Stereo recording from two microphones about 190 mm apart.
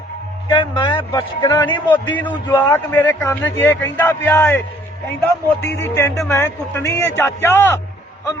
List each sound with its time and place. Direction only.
0.4 s a man's voice: 25° left (ahead or behind)